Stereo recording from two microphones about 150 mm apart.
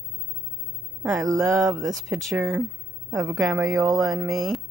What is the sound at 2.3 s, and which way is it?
Speech, 15° right (ahead or behind).